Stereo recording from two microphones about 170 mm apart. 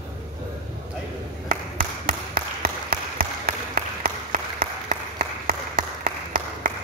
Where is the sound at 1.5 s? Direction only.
55° right (ahead or behind).